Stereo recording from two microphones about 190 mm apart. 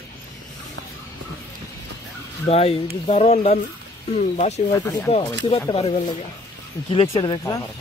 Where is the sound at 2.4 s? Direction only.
30° left (ahead or behind).